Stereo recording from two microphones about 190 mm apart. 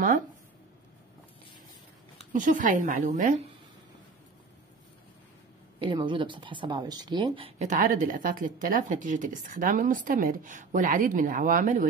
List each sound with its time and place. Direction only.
2.3 s speech: 45° right (ahead or behind)
5.8 s speech: 25° right (ahead or behind); by 11.9 s 45° right (ahead or behind)